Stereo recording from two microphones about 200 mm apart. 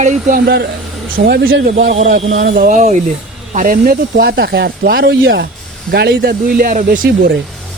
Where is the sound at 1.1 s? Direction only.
45° right (ahead or behind).